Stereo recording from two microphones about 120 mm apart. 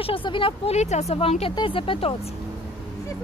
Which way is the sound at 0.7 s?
70° left (ahead or behind).